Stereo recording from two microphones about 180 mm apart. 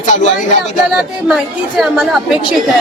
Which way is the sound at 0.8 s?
5° right (ahead or behind).